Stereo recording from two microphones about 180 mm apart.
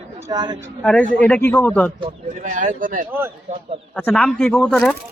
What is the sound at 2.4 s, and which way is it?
Speech, 45° right (ahead or behind).